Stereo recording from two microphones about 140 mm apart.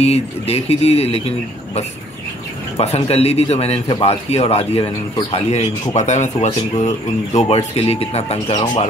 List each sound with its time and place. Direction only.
0.0 s speech: 50° left (ahead or behind)
2.8 s speech: 50° left (ahead or behind)